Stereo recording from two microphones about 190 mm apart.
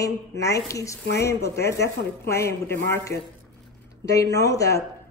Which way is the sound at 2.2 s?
15° left (ahead or behind).